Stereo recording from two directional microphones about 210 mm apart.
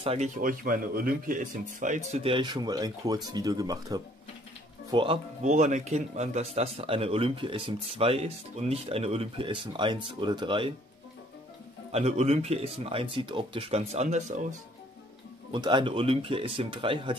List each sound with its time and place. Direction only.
0.0 s speech: 30° right (ahead or behind)
0.4 s speech: 40° right (ahead or behind); by 10.7 s 25° right (ahead or behind)
11.9 s speech: 30° right (ahead or behind)
15.5 s speech: 20° right (ahead or behind)